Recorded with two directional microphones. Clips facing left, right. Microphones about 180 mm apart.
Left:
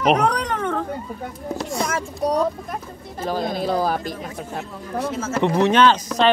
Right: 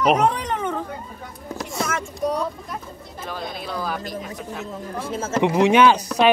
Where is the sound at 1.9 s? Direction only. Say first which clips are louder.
Even; 35° left (ahead or behind).